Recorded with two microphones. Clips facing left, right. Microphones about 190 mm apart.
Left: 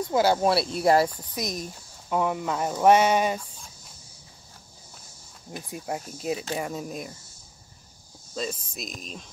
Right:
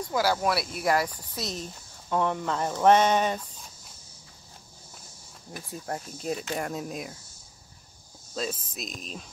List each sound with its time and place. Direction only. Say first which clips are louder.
0.0 s speech: left 4 dB; 25° left (ahead or behind)
1.3 s speech: left 3 dB; 15° left (ahead or behind)
5.5 s speech: left 2 dB; 10° left (ahead or behind)
6.5 s speech: left 1 dB; centre (ahead or behind)
8.4 s speech: left 1 dB; centre (ahead or behind)